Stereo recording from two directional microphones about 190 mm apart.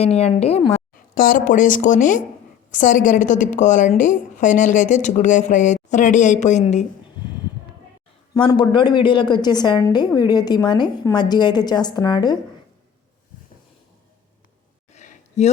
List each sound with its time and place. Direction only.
0.0 s a woman's voice: 35° left (ahead or behind)
1.1 s a woman's voice: 45° left (ahead or behind)
8.3 s a woman's voice: 20° left (ahead or behind)
14.9 s a sound: 40° left (ahead or behind)